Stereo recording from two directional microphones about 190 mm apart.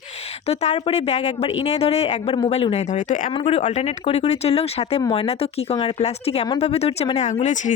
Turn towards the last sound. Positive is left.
turn(degrees=40)  # may be behind; listen again after turning